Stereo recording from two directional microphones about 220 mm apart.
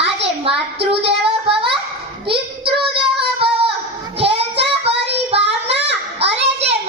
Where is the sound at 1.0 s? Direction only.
25° right (ahead or behind).